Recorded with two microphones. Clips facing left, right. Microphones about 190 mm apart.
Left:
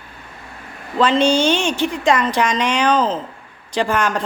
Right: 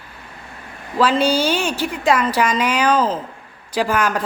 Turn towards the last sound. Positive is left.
turn(degrees=-5)  # may be behind; listen again after turning